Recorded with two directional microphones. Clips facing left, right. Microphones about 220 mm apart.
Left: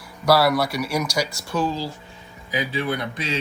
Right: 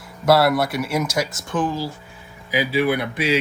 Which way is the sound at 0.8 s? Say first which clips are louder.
Right 2 dB; 25° right (ahead or behind).